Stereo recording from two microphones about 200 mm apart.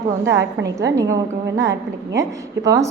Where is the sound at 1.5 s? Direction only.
60° right (ahead or behind).